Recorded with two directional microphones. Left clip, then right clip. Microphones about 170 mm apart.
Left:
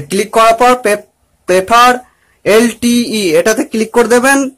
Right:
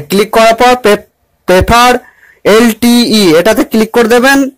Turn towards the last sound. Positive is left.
turn(degrees=-20)  # may be behind; listen again after turning